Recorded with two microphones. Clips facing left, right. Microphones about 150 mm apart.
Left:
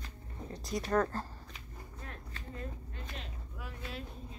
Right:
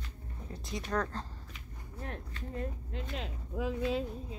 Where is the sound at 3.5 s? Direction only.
90° right.